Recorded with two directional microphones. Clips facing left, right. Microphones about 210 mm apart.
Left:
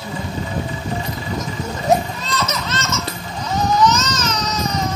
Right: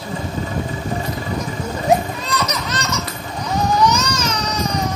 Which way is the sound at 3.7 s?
10° right (ahead or behind).